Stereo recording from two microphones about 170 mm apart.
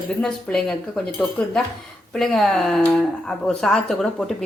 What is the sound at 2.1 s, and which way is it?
A woman's voice, centre (ahead or behind).